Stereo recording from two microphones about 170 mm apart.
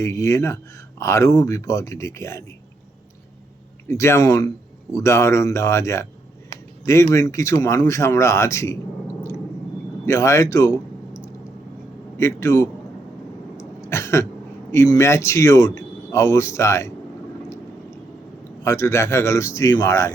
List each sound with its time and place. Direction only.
0.0 s speech: 15° left (ahead or behind)
3.8 s speech: 15° left (ahead or behind)
10.1 s speech: 15° left (ahead or behind)
13.6 s throat clearing: 15° left (ahead or behind)
14.7 s speech: 15° left (ahead or behind)
18.6 s speech: 15° left (ahead or behind)